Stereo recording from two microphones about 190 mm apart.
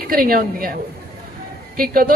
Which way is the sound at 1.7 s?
50° right (ahead or behind).